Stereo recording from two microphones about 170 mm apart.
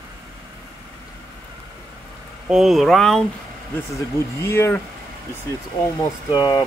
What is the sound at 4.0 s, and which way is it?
Speech, 15° left (ahead or behind).